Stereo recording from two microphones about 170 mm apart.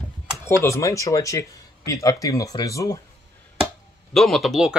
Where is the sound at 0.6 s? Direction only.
15° left (ahead or behind).